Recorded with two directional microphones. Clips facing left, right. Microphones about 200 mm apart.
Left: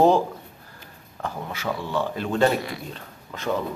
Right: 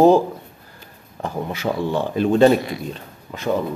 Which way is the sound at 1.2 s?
20° right (ahead or behind).